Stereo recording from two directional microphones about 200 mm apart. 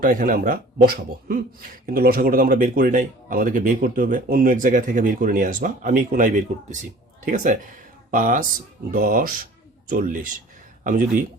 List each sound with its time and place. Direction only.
0.0 s a man's voice: 45° right (ahead or behind)